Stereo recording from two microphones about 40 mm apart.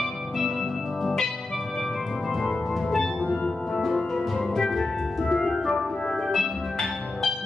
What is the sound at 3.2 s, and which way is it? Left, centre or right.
Music, left.